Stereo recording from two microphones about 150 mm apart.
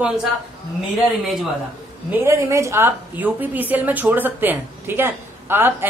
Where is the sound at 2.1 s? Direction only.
15° right (ahead or behind).